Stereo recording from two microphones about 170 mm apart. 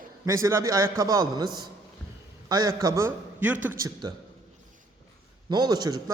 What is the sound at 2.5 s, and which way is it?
A man's voice, 20° right (ahead or behind).